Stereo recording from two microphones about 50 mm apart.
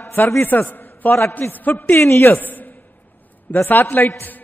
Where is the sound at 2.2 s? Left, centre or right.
Left.